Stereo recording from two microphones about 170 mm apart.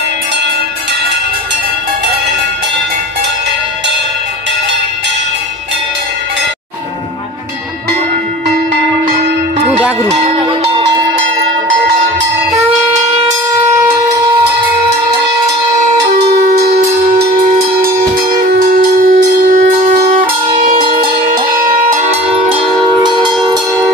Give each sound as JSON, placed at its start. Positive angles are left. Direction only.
{"t": 13.7, "sound": "cowbell", "side_deg": -15}
{"t": 16.7, "sound": "cowbell", "side_deg": -65}
{"t": 17.7, "sound": "wind instrument", "side_deg": -60}
{"t": 21.9, "sound": "music", "side_deg": -40}
{"t": 22.6, "sound": "music", "side_deg": -30}